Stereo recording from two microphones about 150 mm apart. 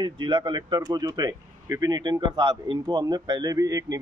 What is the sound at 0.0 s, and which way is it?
A man's voice, 30° right (ahead or behind).